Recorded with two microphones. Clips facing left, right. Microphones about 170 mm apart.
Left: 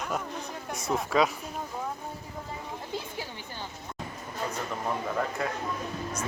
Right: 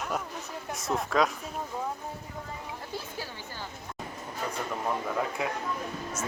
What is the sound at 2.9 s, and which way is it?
Speech, 20° left (ahead or behind).